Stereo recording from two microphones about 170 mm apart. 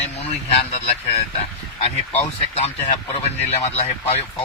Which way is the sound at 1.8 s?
35° left (ahead or behind).